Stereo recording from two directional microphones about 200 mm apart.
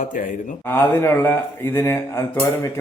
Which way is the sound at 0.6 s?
10° left (ahead or behind).